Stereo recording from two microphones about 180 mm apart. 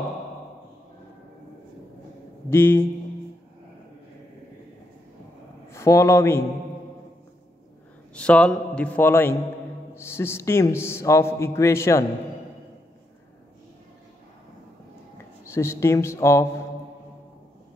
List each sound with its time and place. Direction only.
2.5 s a man's voice: 15° left (ahead or behind)
5.7 s speech: 15° left (ahead or behind)
8.1 s a man's voice: 5° left (ahead or behind)
15.5 s a man's voice: 15° left (ahead or behind)